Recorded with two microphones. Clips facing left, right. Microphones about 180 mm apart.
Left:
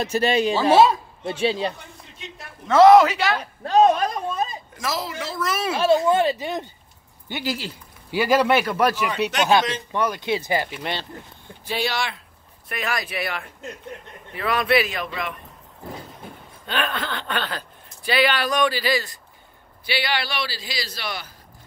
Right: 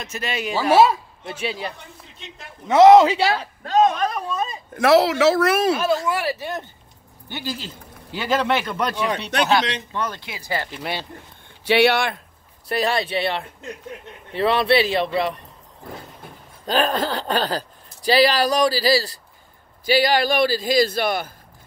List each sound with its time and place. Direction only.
0.0 s speech: 35° left (ahead or behind)
0.6 s speech: 10° right (ahead or behind)
1.2 s speech: 30° left (ahead or behind)
2.7 s speech: 20° right (ahead or behind)
3.8 s speech: 35° left (ahead or behind)
4.7 s speech: 65° right (ahead or behind)
5.7 s a man's voice: 30° left (ahead or behind); by 10.2 s 10° left (ahead or behind)
10.2 s speech: 25° left (ahead or behind)
11.6 s speech: 70° right (ahead or behind)
12.6 s speech: 35° right (ahead or behind)
16.6 s a man's voice: 40° right (ahead or behind)